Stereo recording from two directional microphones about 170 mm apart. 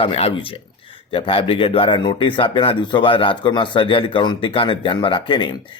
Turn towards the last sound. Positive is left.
turn(degrees=30)  # may be behind; listen again after turning